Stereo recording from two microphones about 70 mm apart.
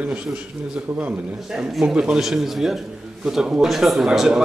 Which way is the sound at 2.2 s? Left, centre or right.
Centre.